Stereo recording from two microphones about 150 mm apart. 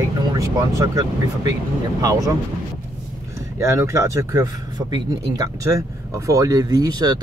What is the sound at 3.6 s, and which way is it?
Speech, 20° right (ahead or behind).